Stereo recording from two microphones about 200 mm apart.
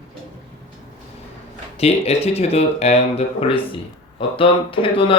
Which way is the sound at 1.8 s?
30° left (ahead or behind).